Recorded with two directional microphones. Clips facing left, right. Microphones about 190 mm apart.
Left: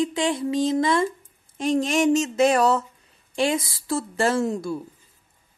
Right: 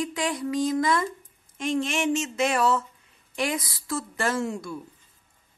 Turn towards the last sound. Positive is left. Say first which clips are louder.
# left 5 dB
turn(degrees=35)  # may be behind; listen again after turning